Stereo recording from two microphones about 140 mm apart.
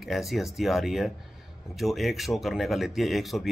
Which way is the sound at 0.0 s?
Centre (ahead or behind).